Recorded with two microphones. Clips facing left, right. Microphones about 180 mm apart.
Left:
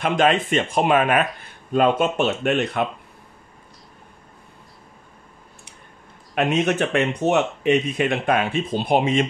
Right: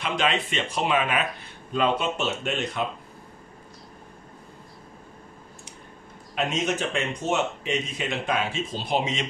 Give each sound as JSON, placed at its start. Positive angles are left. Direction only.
{"t": 0.0, "sound": "speech", "side_deg": 50}
{"t": 6.3, "sound": "speech", "side_deg": 60}